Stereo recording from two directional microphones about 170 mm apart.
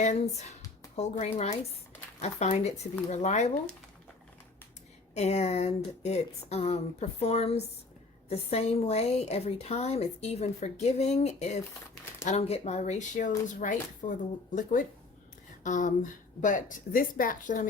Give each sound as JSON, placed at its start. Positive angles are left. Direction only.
{"t": 0.0, "sound": "a woman's voice", "side_deg": 40}
{"t": 5.1, "sound": "a woman's voice", "side_deg": 40}